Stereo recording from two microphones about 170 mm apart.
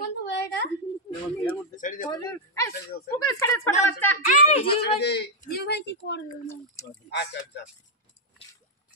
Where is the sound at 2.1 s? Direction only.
20° left (ahead or behind).